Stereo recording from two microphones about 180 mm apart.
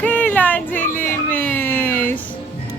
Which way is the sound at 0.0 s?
10° left (ahead or behind).